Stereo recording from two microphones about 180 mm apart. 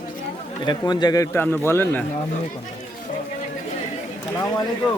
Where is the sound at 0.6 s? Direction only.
25° left (ahead or behind).